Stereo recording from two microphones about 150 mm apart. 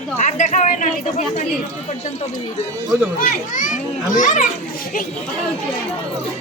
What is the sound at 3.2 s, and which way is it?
A woman's voice, 65° left (ahead or behind).